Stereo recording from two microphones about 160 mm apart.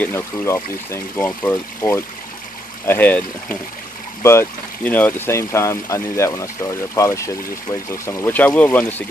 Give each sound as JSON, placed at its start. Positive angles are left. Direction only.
{"t": 0.0, "sound": "speech", "side_deg": 15}